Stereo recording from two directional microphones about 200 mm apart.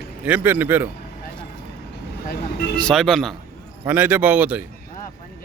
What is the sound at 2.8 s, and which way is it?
Speech, centre (ahead or behind).